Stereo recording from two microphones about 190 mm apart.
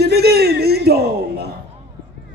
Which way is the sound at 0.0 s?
60° right (ahead or behind).